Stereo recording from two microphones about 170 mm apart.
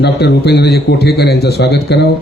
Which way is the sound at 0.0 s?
75° left (ahead or behind).